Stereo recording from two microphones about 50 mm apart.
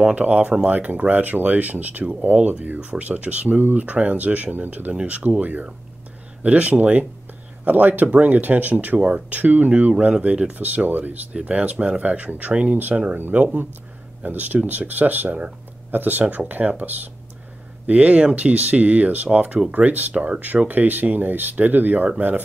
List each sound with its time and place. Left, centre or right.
0.0 s speech: right
9.9 s speech: right
11.3 s speech: right